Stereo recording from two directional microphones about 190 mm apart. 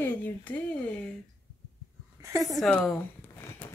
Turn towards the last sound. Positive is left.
turn(degrees=5)  # may be behind; listen again after turning